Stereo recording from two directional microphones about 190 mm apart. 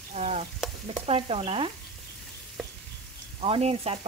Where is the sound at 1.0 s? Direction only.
30° right (ahead or behind).